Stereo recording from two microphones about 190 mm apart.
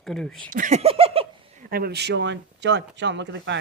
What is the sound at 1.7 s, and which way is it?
Speech, 55° right (ahead or behind).